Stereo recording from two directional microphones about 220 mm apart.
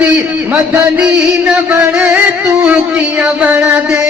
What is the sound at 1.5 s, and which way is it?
Music, 5° right (ahead or behind).